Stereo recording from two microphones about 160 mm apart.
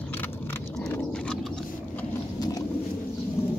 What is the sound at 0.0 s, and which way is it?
Vehicle, 10° left (ahead or behind).